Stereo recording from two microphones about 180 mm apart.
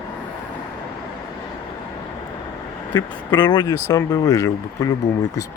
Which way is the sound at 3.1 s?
25° left (ahead or behind).